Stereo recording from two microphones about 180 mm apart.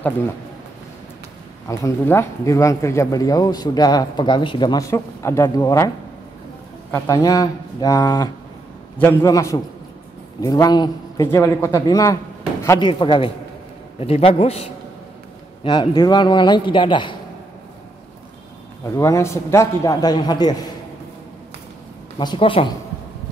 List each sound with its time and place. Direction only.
1.7 s speech: 15° left (ahead or behind)
6.9 s a man's voice: 15° left (ahead or behind)
18.9 s speech: 15° left (ahead or behind)
22.2 s speech: 25° left (ahead or behind)